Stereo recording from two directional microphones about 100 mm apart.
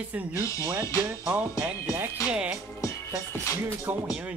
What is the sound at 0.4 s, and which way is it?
Speech, 30° left (ahead or behind).